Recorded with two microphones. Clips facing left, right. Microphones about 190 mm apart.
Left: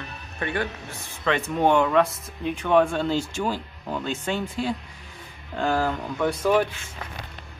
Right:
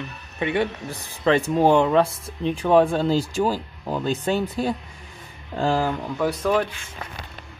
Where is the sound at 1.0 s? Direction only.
35° right (ahead or behind).